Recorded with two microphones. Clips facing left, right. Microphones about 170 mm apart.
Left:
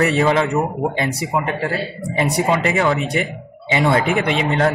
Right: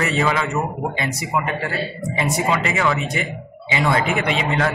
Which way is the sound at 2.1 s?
40° left (ahead or behind).